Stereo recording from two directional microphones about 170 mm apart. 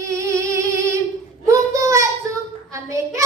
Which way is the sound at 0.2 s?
15° right (ahead or behind).